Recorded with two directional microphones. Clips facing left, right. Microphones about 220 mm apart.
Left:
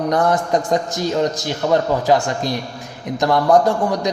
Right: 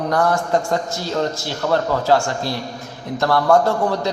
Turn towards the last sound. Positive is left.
turn(degrees=15)  # may be behind; listen again after turning